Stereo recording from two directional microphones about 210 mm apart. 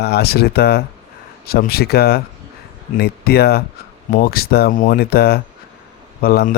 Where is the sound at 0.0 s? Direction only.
50° left (ahead or behind).